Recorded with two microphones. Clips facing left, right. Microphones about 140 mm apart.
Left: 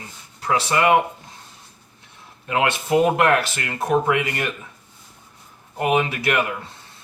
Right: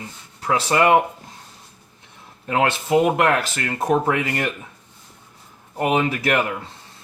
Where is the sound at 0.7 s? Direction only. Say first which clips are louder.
Right 2 dB; 35° right (ahead or behind).